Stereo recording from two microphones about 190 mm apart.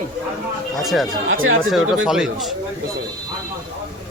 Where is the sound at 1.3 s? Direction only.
90° right.